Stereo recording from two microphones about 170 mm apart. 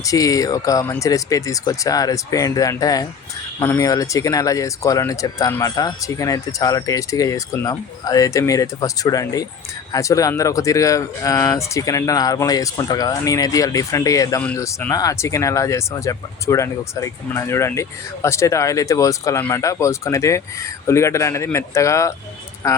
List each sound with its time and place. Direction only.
0.0 s speech: 20° left (ahead or behind)